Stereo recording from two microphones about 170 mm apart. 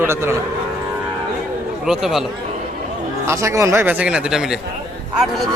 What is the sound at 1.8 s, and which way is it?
Speech, 5° right (ahead or behind).